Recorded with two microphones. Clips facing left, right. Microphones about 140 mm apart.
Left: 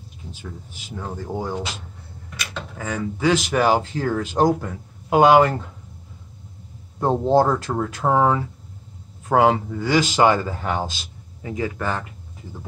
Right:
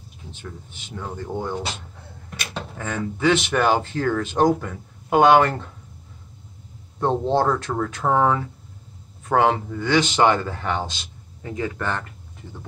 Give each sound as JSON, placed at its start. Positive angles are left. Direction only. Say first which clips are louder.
{"t": 0.7, "sound": "speech", "louder": "left 1 dB", "side_deg": 5}
{"t": 2.8, "sound": "speech", "louder": "even", "side_deg": 5}
{"t": 7.0, "sound": "speech", "louder": "left 3 dB", "side_deg": 5}